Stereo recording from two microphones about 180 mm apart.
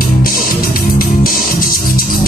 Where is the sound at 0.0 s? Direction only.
55° left (ahead or behind).